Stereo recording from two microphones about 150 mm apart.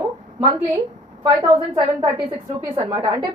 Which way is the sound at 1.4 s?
35° right (ahead or behind).